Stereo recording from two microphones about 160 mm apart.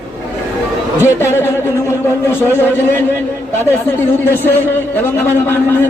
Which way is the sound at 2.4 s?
15° right (ahead or behind).